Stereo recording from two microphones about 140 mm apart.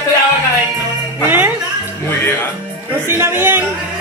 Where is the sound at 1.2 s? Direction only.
15° right (ahead or behind).